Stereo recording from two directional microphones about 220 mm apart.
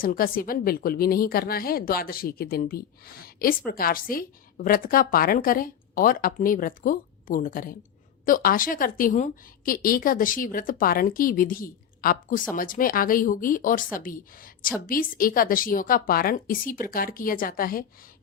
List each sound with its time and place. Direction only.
0.0 s a woman's voice: 40° left (ahead or behind)